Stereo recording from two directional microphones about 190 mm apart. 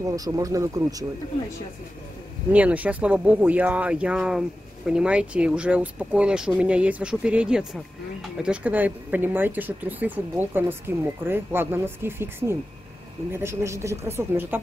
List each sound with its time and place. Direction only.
0.0 s speech: 20° right (ahead or behind)
2.5 s speech: 5° right (ahead or behind)